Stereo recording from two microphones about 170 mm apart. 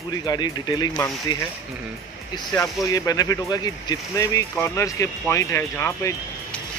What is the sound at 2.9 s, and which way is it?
Speech, 20° left (ahead or behind).